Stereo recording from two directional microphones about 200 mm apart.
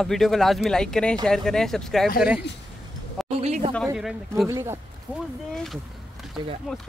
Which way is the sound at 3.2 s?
30° right (ahead or behind).